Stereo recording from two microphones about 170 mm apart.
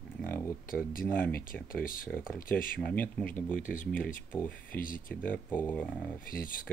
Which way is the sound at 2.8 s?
10° left (ahead or behind).